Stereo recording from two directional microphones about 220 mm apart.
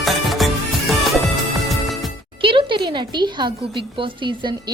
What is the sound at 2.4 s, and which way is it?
A woman's voice, 25° right (ahead or behind).